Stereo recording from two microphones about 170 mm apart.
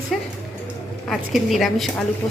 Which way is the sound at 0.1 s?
Centre (ahead or behind).